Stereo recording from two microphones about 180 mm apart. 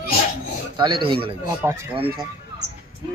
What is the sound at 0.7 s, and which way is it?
Speech, 25° right (ahead or behind).